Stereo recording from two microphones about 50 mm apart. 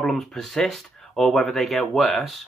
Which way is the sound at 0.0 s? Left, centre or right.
Centre.